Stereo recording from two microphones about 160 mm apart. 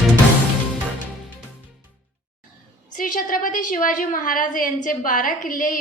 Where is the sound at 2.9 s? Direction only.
55° left (ahead or behind).